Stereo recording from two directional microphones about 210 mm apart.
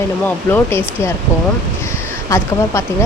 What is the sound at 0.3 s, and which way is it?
Speech, 10° left (ahead or behind).